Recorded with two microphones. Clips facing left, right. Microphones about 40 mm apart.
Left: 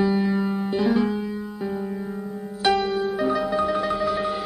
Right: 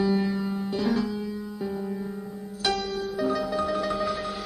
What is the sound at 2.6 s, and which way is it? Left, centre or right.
Music, left.